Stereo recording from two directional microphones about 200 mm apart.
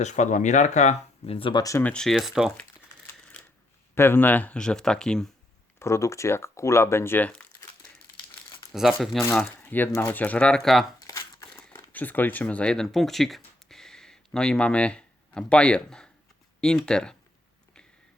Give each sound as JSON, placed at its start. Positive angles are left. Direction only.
{"t": 0.0, "sound": "speech", "side_deg": 35}
{"t": 3.9, "sound": "speech", "side_deg": 10}
{"t": 5.8, "sound": "speech", "side_deg": 15}
{"t": 8.7, "sound": "speech", "side_deg": 0}
{"t": 11.0, "sound": "crumpling", "side_deg": 15}
{"t": 16.6, "sound": "speech", "side_deg": 5}